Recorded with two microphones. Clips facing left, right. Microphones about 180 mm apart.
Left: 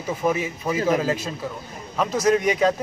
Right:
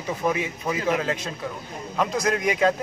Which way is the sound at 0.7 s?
40° left (ahead or behind).